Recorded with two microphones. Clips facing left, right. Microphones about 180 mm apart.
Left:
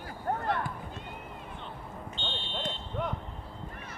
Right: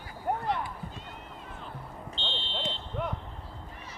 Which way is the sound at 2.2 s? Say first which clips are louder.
Right 1 dB; 50° left (ahead or behind).